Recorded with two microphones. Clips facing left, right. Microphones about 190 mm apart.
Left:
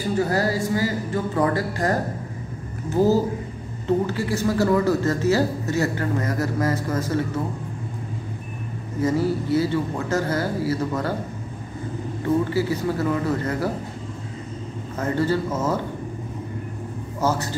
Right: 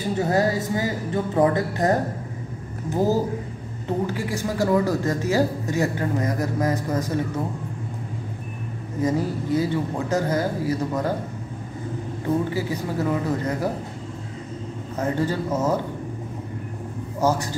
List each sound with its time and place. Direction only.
0.3 s speech: 20° right (ahead or behind)
9.0 s speech: 15° right (ahead or behind)
12.5 s speech: 15° right (ahead or behind)
15.0 s speech: 15° right (ahead or behind)
17.2 s speech: 15° right (ahead or behind)